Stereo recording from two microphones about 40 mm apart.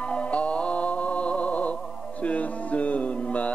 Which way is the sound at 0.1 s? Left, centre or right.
Left.